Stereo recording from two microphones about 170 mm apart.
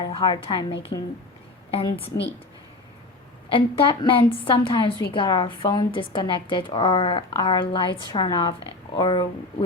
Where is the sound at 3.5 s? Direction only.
30° left (ahead or behind).